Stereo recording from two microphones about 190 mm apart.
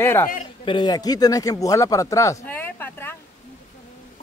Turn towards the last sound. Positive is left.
turn(degrees=10)  # may be behind; listen again after turning